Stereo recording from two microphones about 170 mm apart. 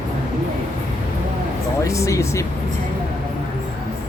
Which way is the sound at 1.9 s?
20° left (ahead or behind).